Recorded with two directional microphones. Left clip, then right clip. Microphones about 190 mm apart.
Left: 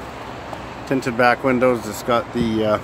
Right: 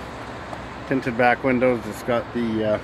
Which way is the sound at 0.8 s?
15° left (ahead or behind).